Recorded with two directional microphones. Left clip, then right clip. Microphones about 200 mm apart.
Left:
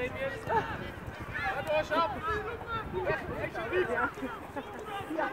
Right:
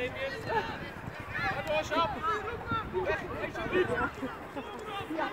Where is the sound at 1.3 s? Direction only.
30° left (ahead or behind).